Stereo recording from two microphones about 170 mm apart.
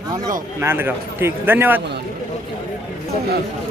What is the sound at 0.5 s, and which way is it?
A man's voice, 10° right (ahead or behind).